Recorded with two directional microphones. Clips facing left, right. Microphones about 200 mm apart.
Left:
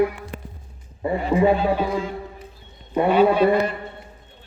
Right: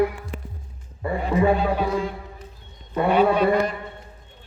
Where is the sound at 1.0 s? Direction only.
25° left (ahead or behind).